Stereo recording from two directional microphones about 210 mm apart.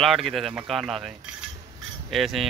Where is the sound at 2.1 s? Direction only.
Centre (ahead or behind).